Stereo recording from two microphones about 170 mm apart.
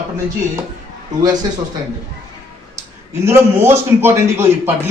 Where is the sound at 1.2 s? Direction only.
25° right (ahead or behind).